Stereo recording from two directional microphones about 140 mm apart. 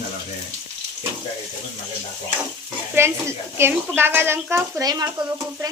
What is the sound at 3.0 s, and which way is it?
Speech, 15° right (ahead or behind).